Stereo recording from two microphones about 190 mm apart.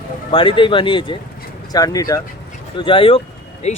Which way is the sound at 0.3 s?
25° left (ahead or behind).